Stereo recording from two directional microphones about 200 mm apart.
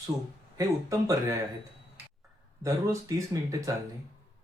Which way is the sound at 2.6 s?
15° right (ahead or behind).